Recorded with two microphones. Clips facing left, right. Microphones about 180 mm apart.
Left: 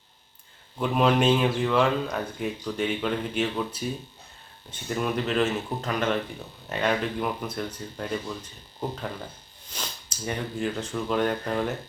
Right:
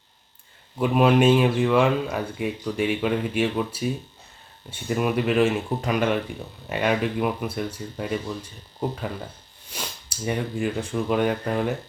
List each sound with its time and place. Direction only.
0.8 s speech: 5° right (ahead or behind)
9.7 s speech: 10° right (ahead or behind)